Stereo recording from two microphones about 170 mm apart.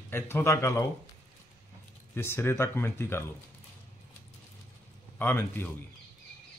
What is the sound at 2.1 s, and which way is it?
Speech, 15° left (ahead or behind).